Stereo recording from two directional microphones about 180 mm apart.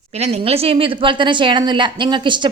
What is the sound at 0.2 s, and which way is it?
A woman's voice, 35° right (ahead or behind).